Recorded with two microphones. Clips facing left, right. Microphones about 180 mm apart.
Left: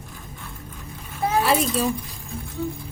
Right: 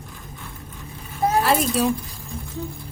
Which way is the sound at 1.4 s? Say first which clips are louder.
Even; centre (ahead or behind).